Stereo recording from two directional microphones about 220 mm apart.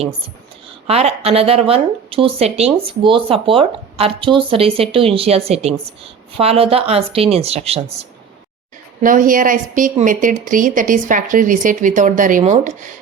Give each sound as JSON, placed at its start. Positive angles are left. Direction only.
{"t": 0.9, "sound": "a woman's voice", "side_deg": -30}